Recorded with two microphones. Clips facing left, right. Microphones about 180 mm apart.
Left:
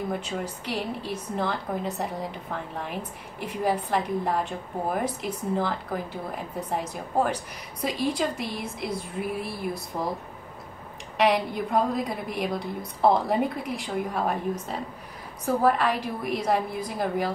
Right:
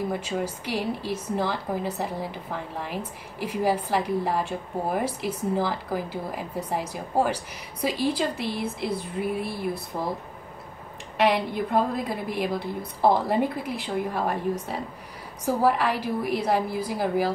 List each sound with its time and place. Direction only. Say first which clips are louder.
0.1 s a woman's voice: right 2 dB; 5° right (ahead or behind)
11.1 s a woman's voice: even; centre (ahead or behind)